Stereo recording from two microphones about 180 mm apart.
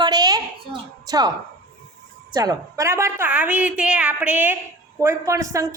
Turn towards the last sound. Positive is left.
turn(degrees=-15)  # may be behind; listen again after turning